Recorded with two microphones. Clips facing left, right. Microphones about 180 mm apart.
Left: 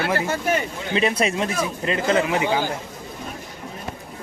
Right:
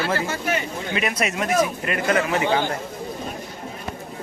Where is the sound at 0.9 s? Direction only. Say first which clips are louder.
Left 4 dB; 30° left (ahead or behind); by 2.7 s 10° left (ahead or behind).